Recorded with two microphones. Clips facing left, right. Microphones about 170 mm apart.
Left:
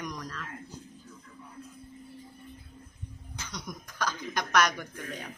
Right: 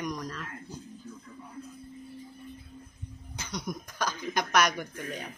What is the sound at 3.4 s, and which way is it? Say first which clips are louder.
Speech: right 5 dB; 15° right (ahead or behind).